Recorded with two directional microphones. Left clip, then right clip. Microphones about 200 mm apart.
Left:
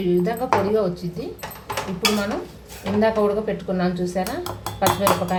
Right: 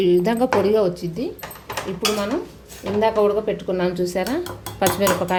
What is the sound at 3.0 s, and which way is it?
A woman's voice, 35° right (ahead or behind).